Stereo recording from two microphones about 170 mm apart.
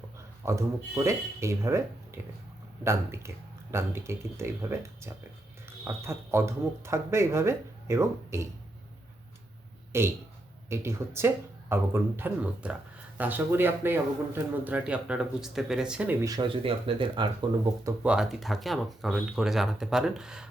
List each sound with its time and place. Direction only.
0.4 s a man's voice: 15° right (ahead or behind)
9.9 s a man's voice: 15° right (ahead or behind)
16.2 s speech: 20° right (ahead or behind)
16.6 s speech: 30° right (ahead or behind)
18.0 s speech: 5° right (ahead or behind)